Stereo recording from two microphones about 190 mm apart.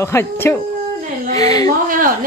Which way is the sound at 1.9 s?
45° right (ahead or behind).